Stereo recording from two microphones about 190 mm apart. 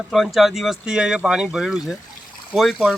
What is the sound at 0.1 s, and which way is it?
Speech, centre (ahead or behind).